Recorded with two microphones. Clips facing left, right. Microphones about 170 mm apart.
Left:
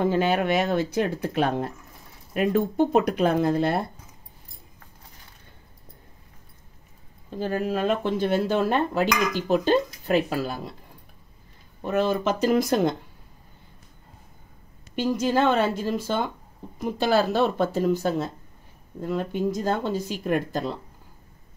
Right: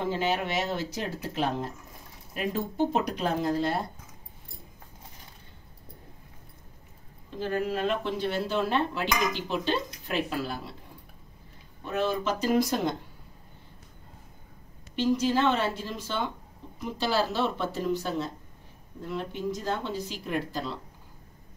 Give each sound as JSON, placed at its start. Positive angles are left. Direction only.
{"t": 0.0, "sound": "speech", "side_deg": 55}
{"t": 7.2, "sound": "speech", "side_deg": 40}
{"t": 11.8, "sound": "speech", "side_deg": 50}
{"t": 15.0, "sound": "speech", "side_deg": 50}